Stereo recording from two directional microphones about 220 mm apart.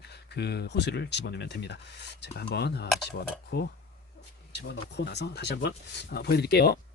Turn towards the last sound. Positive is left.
turn(degrees=45)  # may be behind; listen again after turning